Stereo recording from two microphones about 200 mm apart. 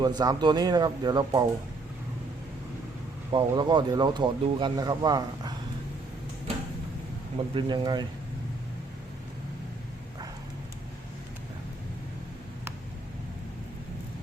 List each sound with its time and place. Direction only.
0.0 s speech: 20° right (ahead or behind)
3.3 s speech: 20° right (ahead or behind)
7.5 s speech: 20° right (ahead or behind)